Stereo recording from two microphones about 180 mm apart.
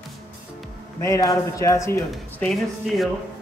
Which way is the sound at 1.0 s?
20° left (ahead or behind).